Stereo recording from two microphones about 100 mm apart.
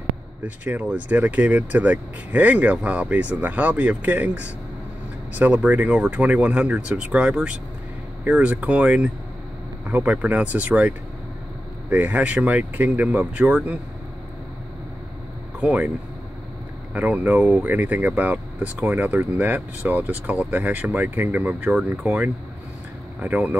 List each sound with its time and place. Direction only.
0.7 s speech: 15° right (ahead or behind)
15.6 s speech: 15° right (ahead or behind)
16.9 s speech: 15° right (ahead or behind)